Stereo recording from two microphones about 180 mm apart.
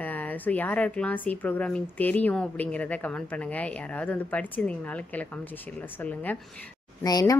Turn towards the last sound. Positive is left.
turn(degrees=20)  # may be behind; listen again after turning